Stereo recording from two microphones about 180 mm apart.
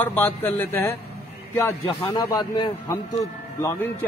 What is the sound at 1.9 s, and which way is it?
Speech, 30° left (ahead or behind).